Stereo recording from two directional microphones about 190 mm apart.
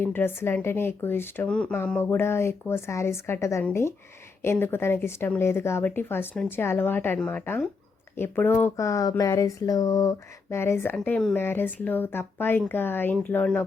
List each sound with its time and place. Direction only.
0.0 s speech: 10° left (ahead or behind)